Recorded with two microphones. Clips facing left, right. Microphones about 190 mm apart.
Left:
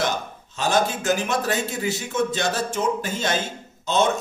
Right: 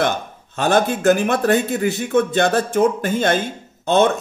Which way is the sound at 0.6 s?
60° right (ahead or behind).